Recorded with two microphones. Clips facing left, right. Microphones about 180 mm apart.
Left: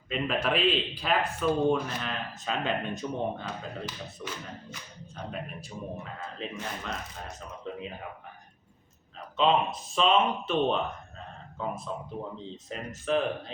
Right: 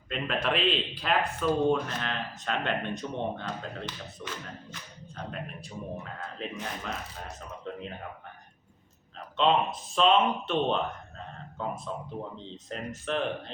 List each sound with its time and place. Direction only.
0.1 s speech: 5° left (ahead or behind)
9.1 s speech: centre (ahead or behind)
11.9 s speech: 5° left (ahead or behind)